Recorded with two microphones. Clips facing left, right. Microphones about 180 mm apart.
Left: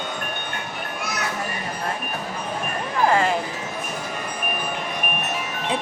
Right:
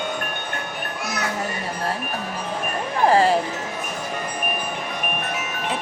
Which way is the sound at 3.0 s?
30° right (ahead or behind).